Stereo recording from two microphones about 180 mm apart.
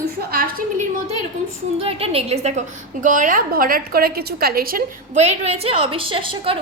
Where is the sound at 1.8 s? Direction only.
30° right (ahead or behind).